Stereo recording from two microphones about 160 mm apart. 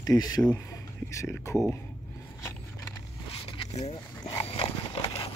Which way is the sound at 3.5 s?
40° left (ahead or behind).